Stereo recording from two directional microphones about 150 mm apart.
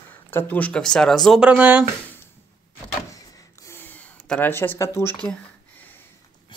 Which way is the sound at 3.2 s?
20° left (ahead or behind).